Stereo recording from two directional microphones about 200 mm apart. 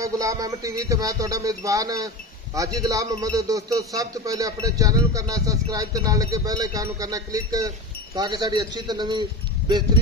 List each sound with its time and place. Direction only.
0.0 s a man's voice: 15° right (ahead or behind)